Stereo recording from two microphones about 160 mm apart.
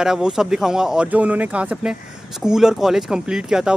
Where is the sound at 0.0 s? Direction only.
5° right (ahead or behind).